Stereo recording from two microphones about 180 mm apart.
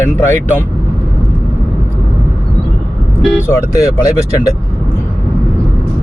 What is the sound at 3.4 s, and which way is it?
Speech, 20° left (ahead or behind).